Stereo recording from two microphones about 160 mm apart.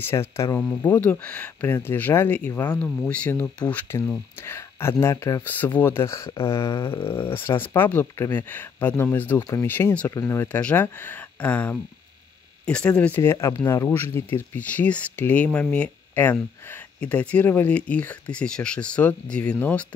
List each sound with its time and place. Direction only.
0.0 s speech: 15° left (ahead or behind)